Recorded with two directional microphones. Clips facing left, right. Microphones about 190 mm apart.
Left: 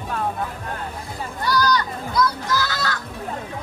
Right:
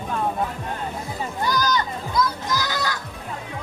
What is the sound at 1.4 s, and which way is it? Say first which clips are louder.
Children playing: left 2 dB; 20° right (ahead or behind).